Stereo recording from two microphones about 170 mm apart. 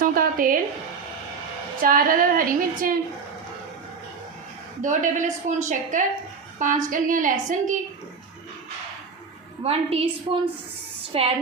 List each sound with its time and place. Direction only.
0.0 s a sound: 55° right (ahead or behind)
1.8 s a woman's voice: 55° right (ahead or behind)
4.8 s a woman's voice: 50° right (ahead or behind)
9.6 s a woman's voice: 35° right (ahead or behind)
11.1 s a woman's voice: 35° right (ahead or behind)